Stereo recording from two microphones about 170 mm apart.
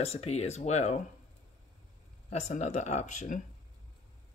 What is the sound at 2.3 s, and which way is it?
Speech, 40° left (ahead or behind).